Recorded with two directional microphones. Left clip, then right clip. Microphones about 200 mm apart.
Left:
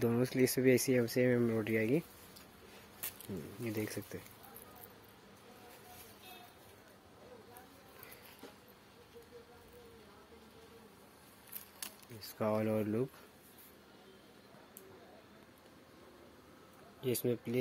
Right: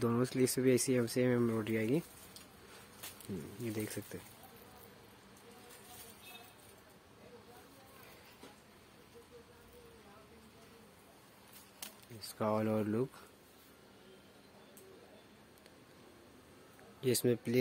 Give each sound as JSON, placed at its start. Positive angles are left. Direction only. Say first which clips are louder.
{"t": 0.0, "sound": "speech", "louder": "left 1 dB", "side_deg": 0}
{"t": 3.6, "sound": "speech", "louder": "left 2 dB", "side_deg": 0}
{"t": 12.2, "sound": "speech", "louder": "even", "side_deg": -5}
{"t": 17.0, "sound": "speech", "louder": "right 3 dB", "side_deg": -30}